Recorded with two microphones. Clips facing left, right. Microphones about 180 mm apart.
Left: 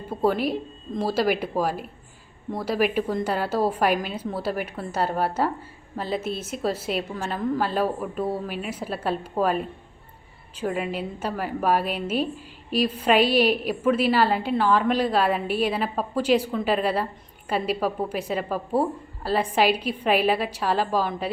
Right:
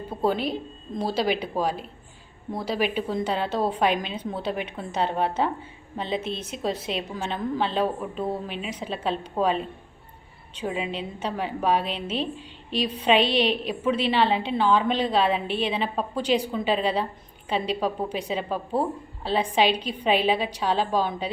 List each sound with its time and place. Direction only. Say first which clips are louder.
0.2 s a woman's voice: left 2 dB; 5° left (ahead or behind)